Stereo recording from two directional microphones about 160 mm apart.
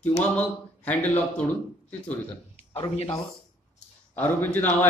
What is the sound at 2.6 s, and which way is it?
Speech, 40° left (ahead or behind).